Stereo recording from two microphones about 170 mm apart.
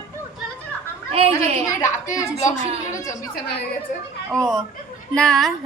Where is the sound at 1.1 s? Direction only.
35° right (ahead or behind).